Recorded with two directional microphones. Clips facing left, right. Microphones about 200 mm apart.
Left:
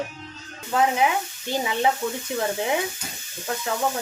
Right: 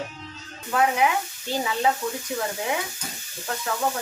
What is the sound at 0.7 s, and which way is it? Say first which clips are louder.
Speech: left 1 dB; 25° left (ahead or behind).